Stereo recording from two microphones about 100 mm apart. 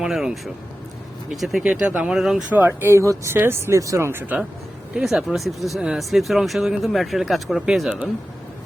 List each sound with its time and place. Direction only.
0.0 s speech: 5° right (ahead or behind)
2.5 s speech: 20° right (ahead or behind)
4.9 s speech: 5° right (ahead or behind)